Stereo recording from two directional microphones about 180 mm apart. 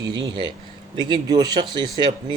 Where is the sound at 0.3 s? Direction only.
25° right (ahead or behind).